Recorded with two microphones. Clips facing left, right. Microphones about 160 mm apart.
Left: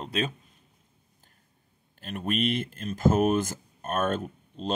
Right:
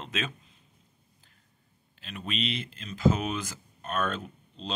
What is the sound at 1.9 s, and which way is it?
Speech, 50° left (ahead or behind).